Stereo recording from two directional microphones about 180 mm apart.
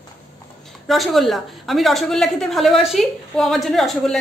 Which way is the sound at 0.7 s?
Centre (ahead or behind).